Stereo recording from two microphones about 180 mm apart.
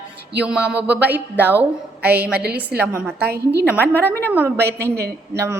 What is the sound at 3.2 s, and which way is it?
Speech, 65° right (ahead or behind).